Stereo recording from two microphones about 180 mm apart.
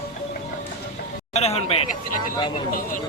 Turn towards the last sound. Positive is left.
turn(degrees=35)  # may be behind; listen again after turning